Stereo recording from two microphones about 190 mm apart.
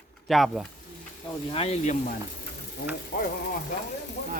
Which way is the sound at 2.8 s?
55° left (ahead or behind).